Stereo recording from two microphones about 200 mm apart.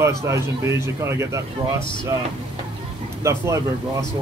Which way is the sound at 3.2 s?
15° right (ahead or behind).